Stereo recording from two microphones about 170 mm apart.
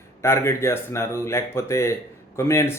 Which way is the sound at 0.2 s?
15° left (ahead or behind).